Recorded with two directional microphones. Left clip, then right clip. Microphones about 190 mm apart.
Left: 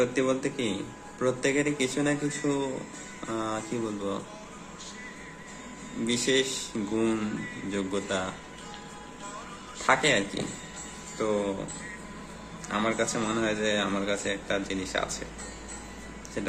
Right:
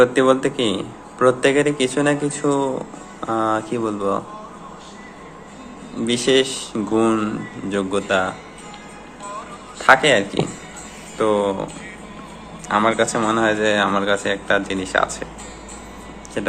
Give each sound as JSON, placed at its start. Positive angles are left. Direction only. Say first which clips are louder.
{"t": 0.0, "sound": "speech", "louder": "right 12 dB", "side_deg": 0}
{"t": 6.1, "sound": "speech", "louder": "right 9 dB", "side_deg": 5}
{"t": 9.8, "sound": "speech", "louder": "right 10 dB", "side_deg": 10}
{"t": 12.6, "sound": "speech", "louder": "right 11 dB", "side_deg": 5}